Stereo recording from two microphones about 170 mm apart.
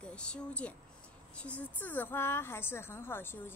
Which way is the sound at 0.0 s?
5° left (ahead or behind).